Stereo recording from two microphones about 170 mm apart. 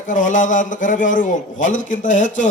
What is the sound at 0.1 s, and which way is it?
A man's voice, 50° left (ahead or behind).